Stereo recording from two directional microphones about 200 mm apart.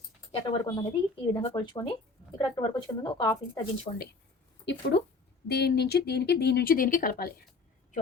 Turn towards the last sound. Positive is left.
turn(degrees=45)  # may be behind; listen again after turning